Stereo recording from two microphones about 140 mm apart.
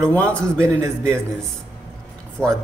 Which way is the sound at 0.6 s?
20° right (ahead or behind).